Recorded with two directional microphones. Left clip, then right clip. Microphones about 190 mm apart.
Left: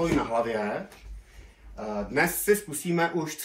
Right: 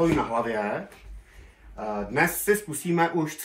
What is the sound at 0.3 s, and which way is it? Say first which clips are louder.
Speech: right 1 dB; 15° right (ahead or behind).